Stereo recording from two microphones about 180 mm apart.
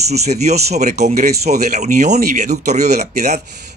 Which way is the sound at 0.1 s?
40° right (ahead or behind).